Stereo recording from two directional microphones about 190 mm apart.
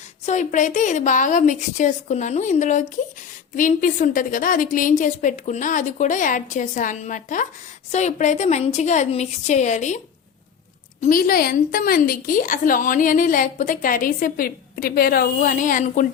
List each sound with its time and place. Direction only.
0.3 s a woman's voice: 40° left (ahead or behind)
11.0 s a woman's voice: 50° left (ahead or behind)